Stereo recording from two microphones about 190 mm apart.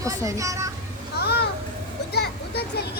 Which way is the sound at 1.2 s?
55° left (ahead or behind).